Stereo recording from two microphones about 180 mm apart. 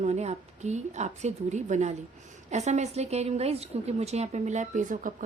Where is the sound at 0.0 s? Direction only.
40° right (ahead or behind).